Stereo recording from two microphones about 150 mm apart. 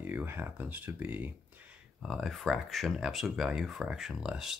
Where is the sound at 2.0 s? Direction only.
Centre (ahead or behind).